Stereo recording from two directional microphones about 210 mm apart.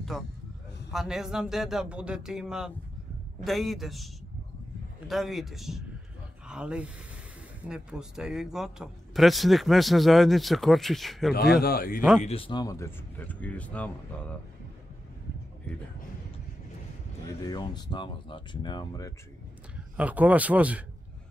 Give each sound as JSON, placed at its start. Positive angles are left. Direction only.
{"t": 0.9, "sound": "a man's voice", "side_deg": 0}
{"t": 11.6, "sound": "speech", "side_deg": 45}
{"t": 12.2, "sound": "speech", "side_deg": 30}
{"t": 17.5, "sound": "speech", "side_deg": 20}
{"t": 20.0, "sound": "speech", "side_deg": -5}